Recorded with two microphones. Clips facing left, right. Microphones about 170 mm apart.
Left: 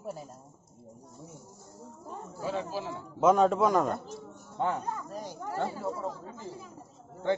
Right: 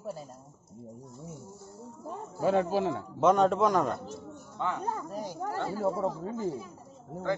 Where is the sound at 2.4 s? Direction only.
60° right (ahead or behind).